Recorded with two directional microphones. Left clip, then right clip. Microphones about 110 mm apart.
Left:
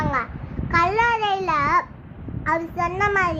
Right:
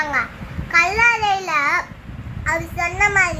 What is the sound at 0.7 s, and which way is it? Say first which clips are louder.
Babbling: right 4 dB; 30° left (ahead or behind).